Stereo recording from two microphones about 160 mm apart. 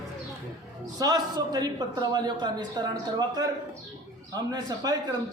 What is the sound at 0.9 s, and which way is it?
A man's voice, 25° right (ahead or behind).